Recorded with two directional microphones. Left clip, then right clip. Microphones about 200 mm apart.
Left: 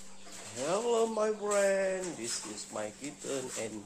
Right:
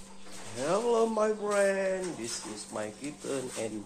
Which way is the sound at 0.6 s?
5° left (ahead or behind).